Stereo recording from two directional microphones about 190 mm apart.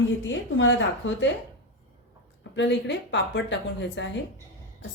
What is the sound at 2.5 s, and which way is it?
A woman's voice, 65° left (ahead or behind).